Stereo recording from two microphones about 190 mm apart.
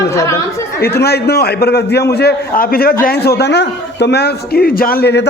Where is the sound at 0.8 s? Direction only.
55° left (ahead or behind).